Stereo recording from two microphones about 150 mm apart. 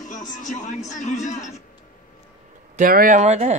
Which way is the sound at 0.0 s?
60° left (ahead or behind).